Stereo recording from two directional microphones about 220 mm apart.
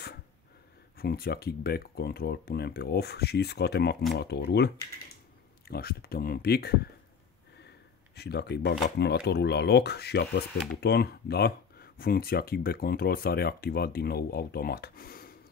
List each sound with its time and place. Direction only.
0.9 s speech: 45° left (ahead or behind)
8.2 s speech: 50° left (ahead or behind)